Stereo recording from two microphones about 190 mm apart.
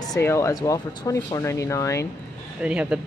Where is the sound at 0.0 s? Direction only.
15° left (ahead or behind).